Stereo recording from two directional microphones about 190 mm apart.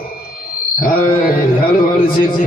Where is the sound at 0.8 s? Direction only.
50° left (ahead or behind).